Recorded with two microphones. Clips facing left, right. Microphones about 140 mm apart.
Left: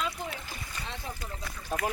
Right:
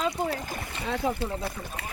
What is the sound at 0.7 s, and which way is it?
Speech, 90° right.